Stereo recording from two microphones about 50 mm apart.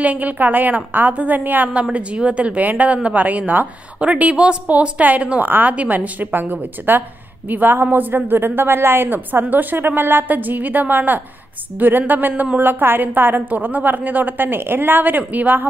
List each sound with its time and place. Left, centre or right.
0.0 s a woman's voice: right
1.7 s a woman's voice: right